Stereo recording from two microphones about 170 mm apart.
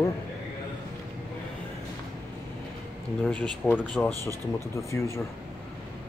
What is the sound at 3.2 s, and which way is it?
Speech, 10° left (ahead or behind).